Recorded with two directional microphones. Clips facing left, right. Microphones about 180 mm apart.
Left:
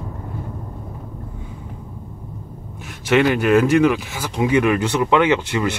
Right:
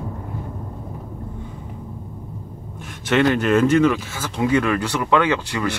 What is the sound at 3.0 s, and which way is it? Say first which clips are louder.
Speech: left 2 dB; 10° left (ahead or behind).